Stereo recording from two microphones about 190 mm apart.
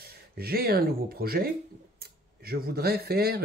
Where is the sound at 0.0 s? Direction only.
55° right (ahead or behind).